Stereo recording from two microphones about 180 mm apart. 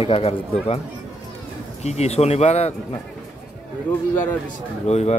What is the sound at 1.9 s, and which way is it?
Speech, 35° left (ahead or behind).